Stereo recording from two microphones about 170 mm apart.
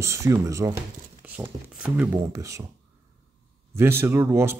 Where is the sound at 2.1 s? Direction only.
20° right (ahead or behind).